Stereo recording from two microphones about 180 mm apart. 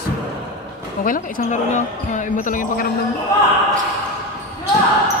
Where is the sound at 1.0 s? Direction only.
45° left (ahead or behind).